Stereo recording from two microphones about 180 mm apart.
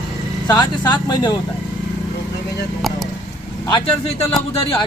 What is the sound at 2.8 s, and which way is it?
Speech, centre (ahead or behind).